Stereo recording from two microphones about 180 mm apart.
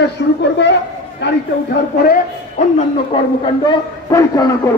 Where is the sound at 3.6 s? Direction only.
20° left (ahead or behind).